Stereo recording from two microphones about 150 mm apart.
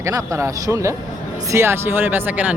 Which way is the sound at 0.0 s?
20° right (ahead or behind).